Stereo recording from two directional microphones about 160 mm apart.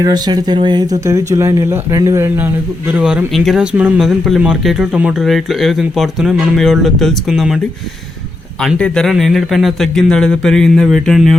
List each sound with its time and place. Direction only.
0.0 s speech: 25° right (ahead or behind); by 7.6 s centre (ahead or behind)
8.6 s speech: 5° left (ahead or behind)